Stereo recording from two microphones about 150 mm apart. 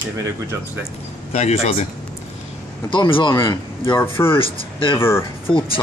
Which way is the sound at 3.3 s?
20° left (ahead or behind).